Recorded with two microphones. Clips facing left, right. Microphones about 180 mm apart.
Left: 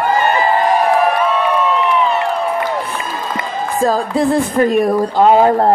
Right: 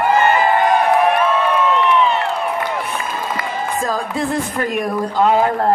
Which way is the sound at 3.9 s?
35° left (ahead or behind).